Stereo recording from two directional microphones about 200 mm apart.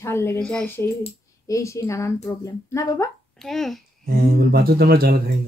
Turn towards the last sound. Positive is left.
turn(degrees=-50)  # may be behind; listen again after turning